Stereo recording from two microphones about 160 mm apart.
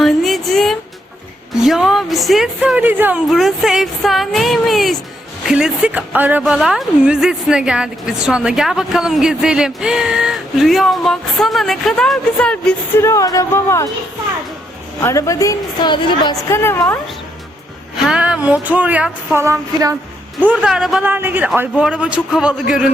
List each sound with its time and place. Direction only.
0.0 s music: centre (ahead or behind)
1.6 s a woman's voice: centre (ahead or behind)
13.0 s a woman's voice: 20° left (ahead or behind)
15.0 s a woman's voice: 20° left (ahead or behind)
16.5 s a woman's voice: 15° left (ahead or behind)
18.1 s a man's voice: 5° right (ahead or behind)
20.4 s a man's voice: 10° right (ahead or behind)